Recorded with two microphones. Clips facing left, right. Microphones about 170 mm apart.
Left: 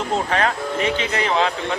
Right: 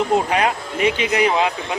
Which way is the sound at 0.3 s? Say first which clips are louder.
Right 1 dB; 15° right (ahead or behind).